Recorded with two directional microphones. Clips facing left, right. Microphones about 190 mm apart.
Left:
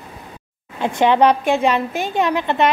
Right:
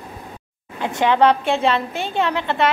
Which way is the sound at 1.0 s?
15° left (ahead or behind).